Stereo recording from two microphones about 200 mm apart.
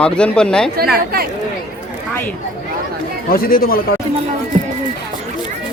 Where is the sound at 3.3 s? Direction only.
45° left (ahead or behind).